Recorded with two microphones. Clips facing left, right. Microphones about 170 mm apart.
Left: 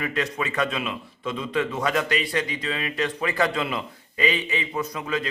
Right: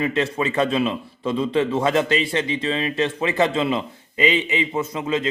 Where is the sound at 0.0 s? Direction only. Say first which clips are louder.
Right 5 dB; 25° right (ahead or behind).